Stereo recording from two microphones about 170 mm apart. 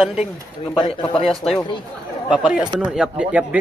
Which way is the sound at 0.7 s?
30° left (ahead or behind).